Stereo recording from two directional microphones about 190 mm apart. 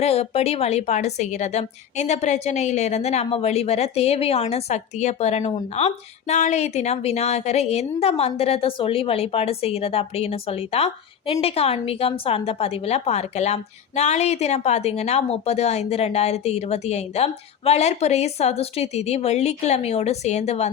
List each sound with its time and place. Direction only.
0.0 s a woman's voice: 35° left (ahead or behind)